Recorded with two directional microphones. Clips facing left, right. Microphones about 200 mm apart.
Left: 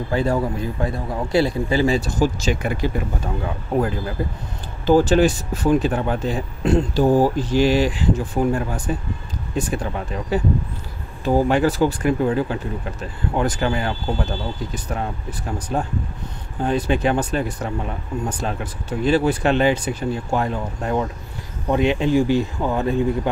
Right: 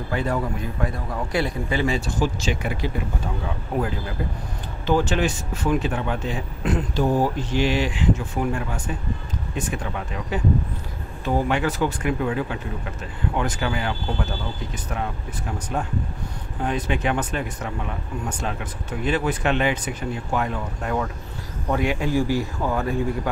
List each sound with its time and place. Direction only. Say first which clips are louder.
0.1 s speech: left 4 dB; 30° left (ahead or behind)
4.8 s speech: left 6 dB; 35° left (ahead or behind)
15.7 s speech: left 3 dB; 35° left (ahead or behind)